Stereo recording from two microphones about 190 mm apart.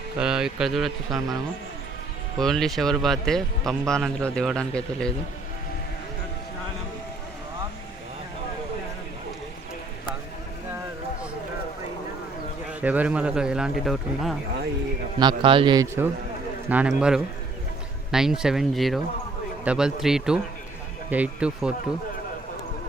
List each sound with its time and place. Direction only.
0.2 s speech: 5° right (ahead or behind)
2.4 s speech: centre (ahead or behind)
12.8 s speech: 10° right (ahead or behind)
15.2 s a man's voice: 25° right (ahead or behind)
16.6 s a man's voice: 10° right (ahead or behind)